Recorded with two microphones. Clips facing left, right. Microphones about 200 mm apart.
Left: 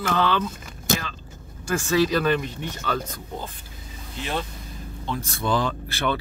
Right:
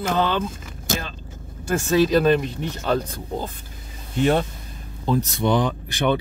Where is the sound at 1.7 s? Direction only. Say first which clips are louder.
Right 3 dB; 40° right (ahead or behind).